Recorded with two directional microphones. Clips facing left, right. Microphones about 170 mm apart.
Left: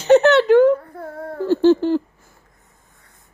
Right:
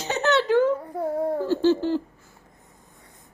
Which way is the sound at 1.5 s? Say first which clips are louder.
Left 9 dB; 60° left (ahead or behind).